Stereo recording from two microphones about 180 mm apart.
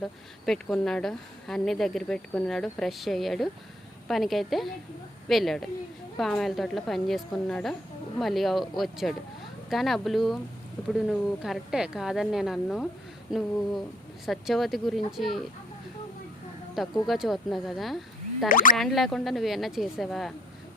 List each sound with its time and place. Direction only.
0.0 s speech: centre (ahead or behind)
16.7 s speech: centre (ahead or behind)
18.4 s speech: 50° left (ahead or behind)
18.8 s speech: centre (ahead or behind)